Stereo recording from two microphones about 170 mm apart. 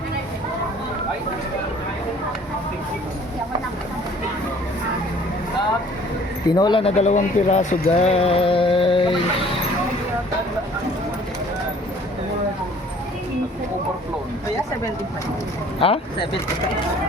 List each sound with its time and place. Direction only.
6.6 s speech: 30° left (ahead or behind)
15.8 s speech: 30° left (ahead or behind)